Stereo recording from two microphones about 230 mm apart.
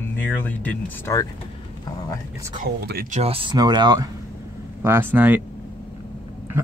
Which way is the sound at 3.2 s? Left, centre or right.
Right.